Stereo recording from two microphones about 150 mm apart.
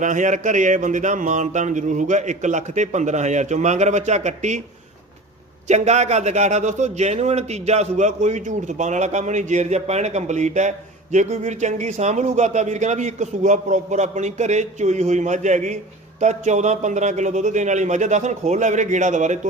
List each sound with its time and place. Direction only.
0.0 s a man's voice: 55° right (ahead or behind)
5.6 s a man's voice: 50° right (ahead or behind)